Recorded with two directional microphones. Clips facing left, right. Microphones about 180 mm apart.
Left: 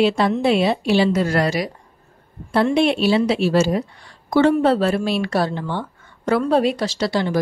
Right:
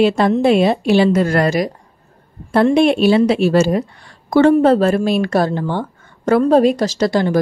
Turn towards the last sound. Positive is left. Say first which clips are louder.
# right 5 dB
turn(degrees=-45)  # may be behind; listen again after turning